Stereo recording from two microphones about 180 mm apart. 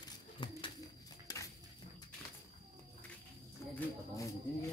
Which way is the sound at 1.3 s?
20° left (ahead or behind).